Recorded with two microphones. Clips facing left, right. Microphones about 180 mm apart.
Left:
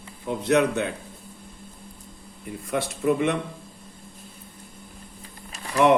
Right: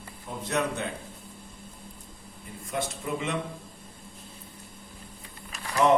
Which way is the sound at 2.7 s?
60° left (ahead or behind).